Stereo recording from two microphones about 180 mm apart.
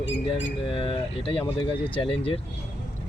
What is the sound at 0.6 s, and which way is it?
Speech, 30° left (ahead or behind).